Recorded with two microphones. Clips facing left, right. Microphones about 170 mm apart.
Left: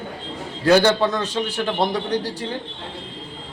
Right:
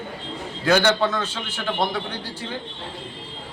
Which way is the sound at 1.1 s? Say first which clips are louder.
Left 5 dB; 35° left (ahead or behind).